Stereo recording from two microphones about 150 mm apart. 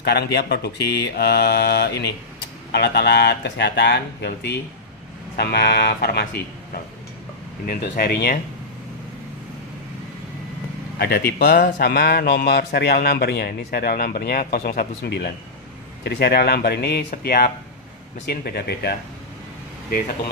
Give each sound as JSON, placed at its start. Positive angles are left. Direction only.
{"t": 0.0, "sound": "a man's voice", "side_deg": 90}
{"t": 7.6, "sound": "speech", "side_deg": 75}
{"t": 11.0, "sound": "a man's voice", "side_deg": 90}